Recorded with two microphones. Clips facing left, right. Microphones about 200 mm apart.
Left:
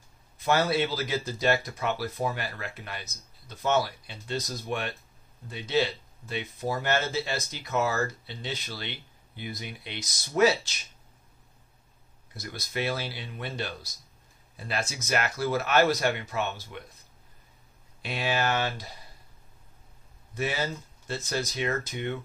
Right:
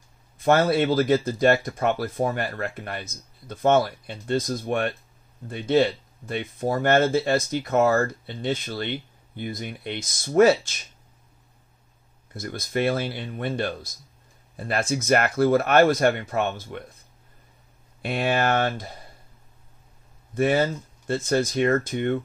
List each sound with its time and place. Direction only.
0.4 s speech: 50° right (ahead or behind)
12.4 s speech: 50° right (ahead or behind)
18.0 s speech: 55° right (ahead or behind)
20.3 s speech: 50° right (ahead or behind)